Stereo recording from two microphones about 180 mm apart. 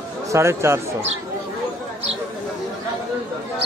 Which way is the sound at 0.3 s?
15° right (ahead or behind).